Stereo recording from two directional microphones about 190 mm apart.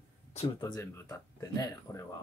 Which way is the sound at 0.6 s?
20° left (ahead or behind).